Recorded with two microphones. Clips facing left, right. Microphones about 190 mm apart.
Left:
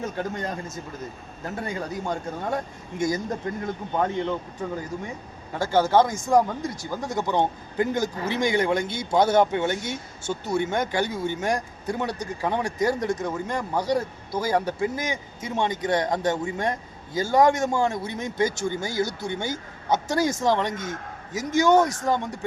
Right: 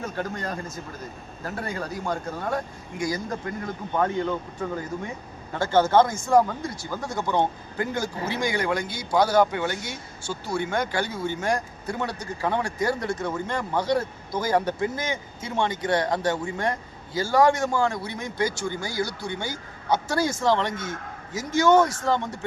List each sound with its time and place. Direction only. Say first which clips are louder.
0.0 s a man's voice: left 1 dB; 20° left (ahead or behind)
5.5 s a man's voice: right 1 dB; 15° left (ahead or behind)